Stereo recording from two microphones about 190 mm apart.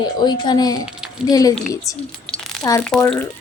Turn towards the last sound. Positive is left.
turn(degrees=5)  # may be behind; listen again after turning